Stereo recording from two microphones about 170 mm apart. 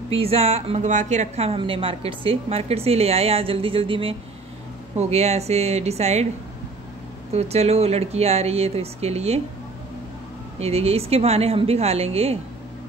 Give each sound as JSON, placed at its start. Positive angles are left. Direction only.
{"t": 0.1, "sound": "speech", "side_deg": -35}
{"t": 7.3, "sound": "speech", "side_deg": -40}
{"t": 10.6, "sound": "speech", "side_deg": -35}